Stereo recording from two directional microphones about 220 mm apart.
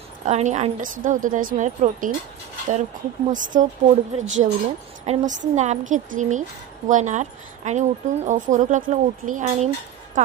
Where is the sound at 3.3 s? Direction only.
35° right (ahead or behind).